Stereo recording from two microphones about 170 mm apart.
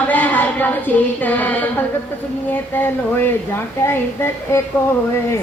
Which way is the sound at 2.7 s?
10° left (ahead or behind).